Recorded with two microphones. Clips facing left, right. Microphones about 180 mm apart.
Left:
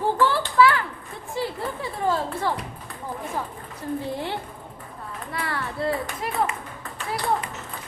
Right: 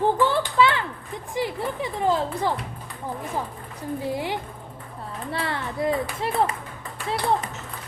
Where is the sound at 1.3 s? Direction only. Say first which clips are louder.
Right 1 dB; 15° right (ahead or behind).